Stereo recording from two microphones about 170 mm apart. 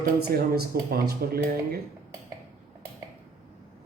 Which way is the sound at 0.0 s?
65° right (ahead or behind).